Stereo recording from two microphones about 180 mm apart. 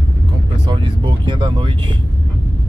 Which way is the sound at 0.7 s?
25° right (ahead or behind).